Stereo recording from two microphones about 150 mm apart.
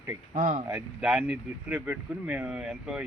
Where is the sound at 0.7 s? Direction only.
5° right (ahead or behind).